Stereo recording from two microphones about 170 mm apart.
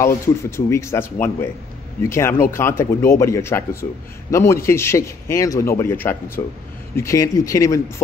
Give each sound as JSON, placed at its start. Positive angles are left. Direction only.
{"t": 0.0, "sound": "speech", "side_deg": 15}
{"t": 6.4, "sound": "speech", "side_deg": 25}